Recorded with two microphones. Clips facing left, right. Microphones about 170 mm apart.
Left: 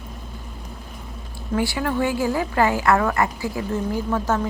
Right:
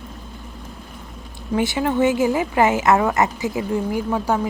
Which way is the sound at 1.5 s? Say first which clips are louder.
Right 3 dB; 20° right (ahead or behind).